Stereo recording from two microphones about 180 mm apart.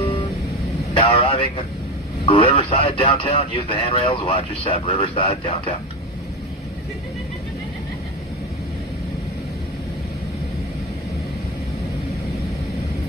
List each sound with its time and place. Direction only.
0.0 s vehicle: 30° left (ahead or behind)
2.2 s speech: 30° left (ahead or behind)